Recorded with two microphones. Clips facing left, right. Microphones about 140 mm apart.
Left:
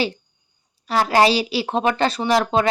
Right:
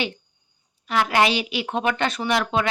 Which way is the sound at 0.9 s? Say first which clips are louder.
Left 4 dB; 35° left (ahead or behind).